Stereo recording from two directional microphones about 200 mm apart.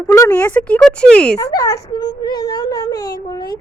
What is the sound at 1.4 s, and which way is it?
Speech, 20° left (ahead or behind).